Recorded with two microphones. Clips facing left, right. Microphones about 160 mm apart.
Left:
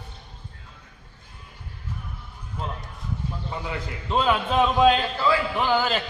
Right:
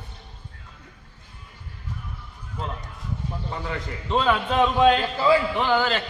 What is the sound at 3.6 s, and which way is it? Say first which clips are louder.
Speech: right 1 dB; 5° left (ahead or behind).